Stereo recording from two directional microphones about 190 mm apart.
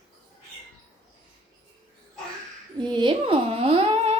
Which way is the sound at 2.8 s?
25° right (ahead or behind).